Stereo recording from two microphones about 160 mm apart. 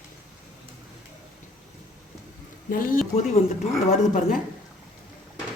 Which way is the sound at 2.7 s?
60° left (ahead or behind).